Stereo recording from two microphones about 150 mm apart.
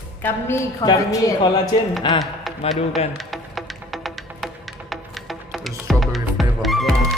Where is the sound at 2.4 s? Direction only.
Centre (ahead or behind).